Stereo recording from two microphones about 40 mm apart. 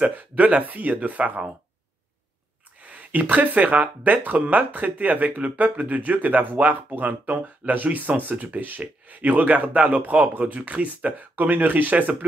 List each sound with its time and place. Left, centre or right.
0.1 s speech: right
2.8 s speech: right